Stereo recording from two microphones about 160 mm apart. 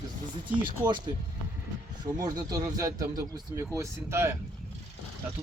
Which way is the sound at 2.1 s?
25° right (ahead or behind).